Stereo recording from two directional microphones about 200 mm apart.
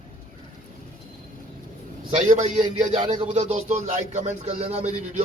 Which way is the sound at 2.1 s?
35° right (ahead or behind).